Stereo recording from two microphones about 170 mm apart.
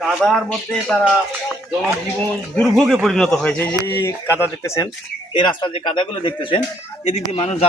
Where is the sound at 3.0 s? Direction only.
5° left (ahead or behind).